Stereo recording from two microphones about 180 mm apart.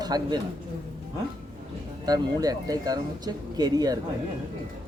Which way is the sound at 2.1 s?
20° right (ahead or behind).